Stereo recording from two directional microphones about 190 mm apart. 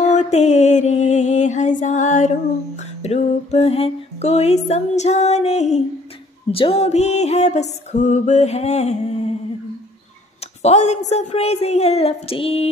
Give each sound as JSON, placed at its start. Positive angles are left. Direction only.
{"t": 0.0, "sound": "music", "side_deg": 40}
{"t": 10.6, "sound": "music", "side_deg": 35}